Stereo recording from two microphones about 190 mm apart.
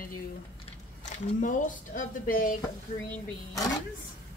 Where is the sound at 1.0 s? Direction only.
45° left (ahead or behind).